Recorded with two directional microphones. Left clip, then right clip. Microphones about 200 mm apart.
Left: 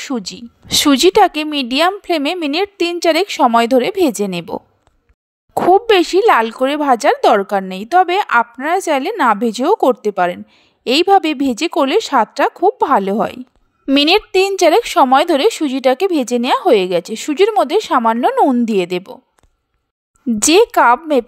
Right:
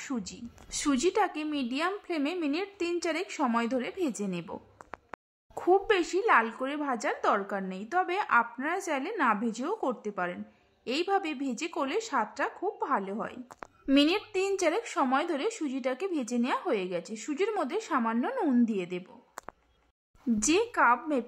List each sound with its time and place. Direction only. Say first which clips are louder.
0.0 s speech: left 14 dB; 40° left (ahead or behind)
18.3 s speech: left 16 dB; 30° left (ahead or behind)
18.7 s speech: left 17 dB; 45° left (ahead or behind)
20.3 s speech: left 16 dB; 45° left (ahead or behind)